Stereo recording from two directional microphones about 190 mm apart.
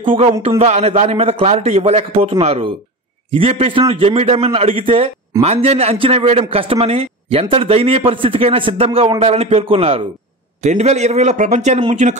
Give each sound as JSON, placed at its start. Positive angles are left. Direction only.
{"t": 0.0, "sound": "a man's voice", "side_deg": -25}